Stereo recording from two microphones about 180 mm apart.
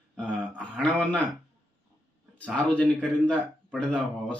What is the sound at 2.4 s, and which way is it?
Speech, 5° left (ahead or behind).